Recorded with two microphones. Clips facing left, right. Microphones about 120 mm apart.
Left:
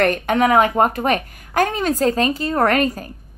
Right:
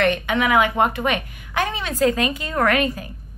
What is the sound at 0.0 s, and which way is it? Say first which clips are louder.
A woman's voice: left 3 dB; 45° left (ahead or behind).